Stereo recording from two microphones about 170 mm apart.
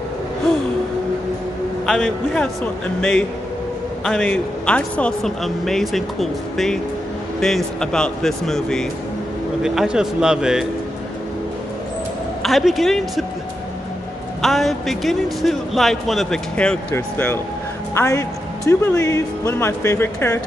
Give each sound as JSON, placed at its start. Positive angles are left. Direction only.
{"t": 1.9, "sound": "a man's voice", "side_deg": 0}
{"t": 12.4, "sound": "a man's voice", "side_deg": 0}
{"t": 14.4, "sound": "a man's voice", "side_deg": 0}